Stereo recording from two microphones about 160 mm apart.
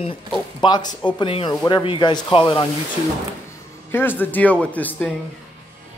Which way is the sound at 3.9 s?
15° left (ahead or behind).